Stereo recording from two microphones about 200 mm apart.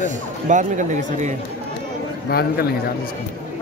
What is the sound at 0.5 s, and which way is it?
Speech, 40° right (ahead or behind).